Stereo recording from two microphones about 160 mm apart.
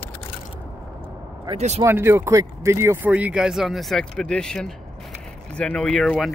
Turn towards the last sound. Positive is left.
turn(degrees=0)  # may be behind; listen again after turning